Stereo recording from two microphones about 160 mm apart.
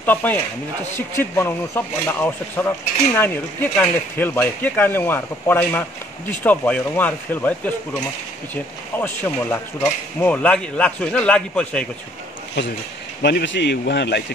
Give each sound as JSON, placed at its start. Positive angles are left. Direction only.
{"t": 0.0, "sound": "cutlery", "side_deg": 10}
{"t": 3.7, "sound": "cutlery", "side_deg": 10}
{"t": 8.9, "sound": "cutlery", "side_deg": 10}
{"t": 12.6, "sound": "speech", "side_deg": 90}